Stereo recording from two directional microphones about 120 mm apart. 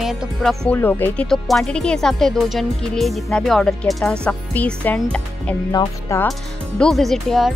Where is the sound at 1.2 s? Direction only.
5° left (ahead or behind).